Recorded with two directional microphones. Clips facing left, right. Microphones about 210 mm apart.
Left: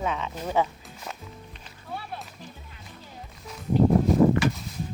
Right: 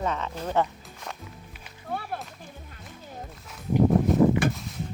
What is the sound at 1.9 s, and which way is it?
Music, 55° right (ahead or behind).